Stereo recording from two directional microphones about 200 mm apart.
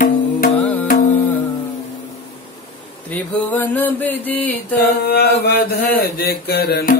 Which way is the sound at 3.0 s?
10° left (ahead or behind).